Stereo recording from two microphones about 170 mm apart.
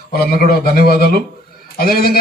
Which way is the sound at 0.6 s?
65° left (ahead or behind).